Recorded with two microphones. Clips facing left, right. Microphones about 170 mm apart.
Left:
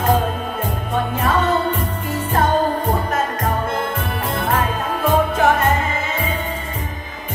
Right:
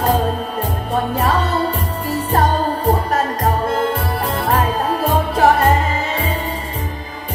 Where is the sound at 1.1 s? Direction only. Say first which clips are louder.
Left 2 dB; 35° right (ahead or behind).